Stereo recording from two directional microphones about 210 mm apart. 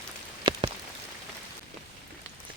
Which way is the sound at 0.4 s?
20° right (ahead or behind).